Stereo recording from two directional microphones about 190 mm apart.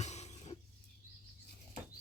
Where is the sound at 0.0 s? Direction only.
35° left (ahead or behind).